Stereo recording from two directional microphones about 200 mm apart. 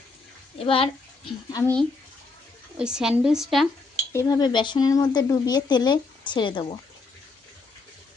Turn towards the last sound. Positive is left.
turn(degrees=25)  # may be behind; listen again after turning